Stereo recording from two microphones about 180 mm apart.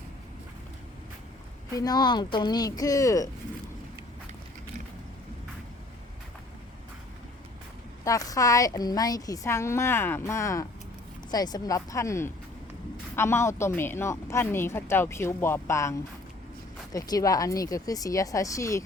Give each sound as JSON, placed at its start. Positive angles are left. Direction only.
{"t": 1.7, "sound": "speech", "side_deg": 20}
{"t": 8.0, "sound": "speech", "side_deg": 20}